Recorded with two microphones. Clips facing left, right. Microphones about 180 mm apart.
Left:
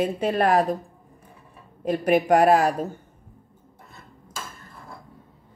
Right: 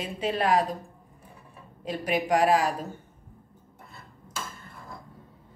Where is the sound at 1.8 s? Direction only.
50° left (ahead or behind).